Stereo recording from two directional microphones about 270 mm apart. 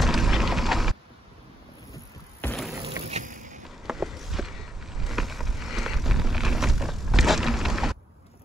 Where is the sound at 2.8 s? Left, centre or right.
Right.